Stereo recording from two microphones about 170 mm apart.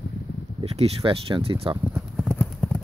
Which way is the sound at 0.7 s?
35° right (ahead or behind).